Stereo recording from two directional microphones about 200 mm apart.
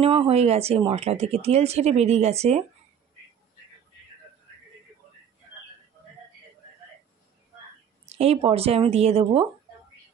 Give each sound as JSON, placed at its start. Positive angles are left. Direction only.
{"t": 0.0, "sound": "speech", "side_deg": -30}
{"t": 8.2, "sound": "speech", "side_deg": -30}